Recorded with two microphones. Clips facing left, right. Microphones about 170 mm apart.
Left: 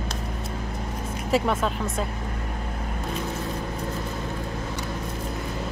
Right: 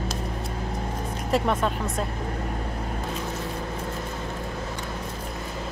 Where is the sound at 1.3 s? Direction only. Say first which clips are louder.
Even; centre (ahead or behind).